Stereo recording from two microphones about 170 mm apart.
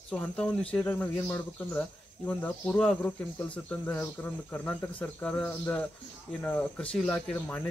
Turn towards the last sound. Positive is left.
turn(degrees=10)  # may be behind; listen again after turning